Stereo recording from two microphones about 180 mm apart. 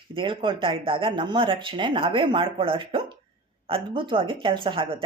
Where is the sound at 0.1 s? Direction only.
30° right (ahead or behind).